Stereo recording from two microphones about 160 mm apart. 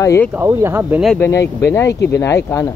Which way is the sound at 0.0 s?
20° left (ahead or behind).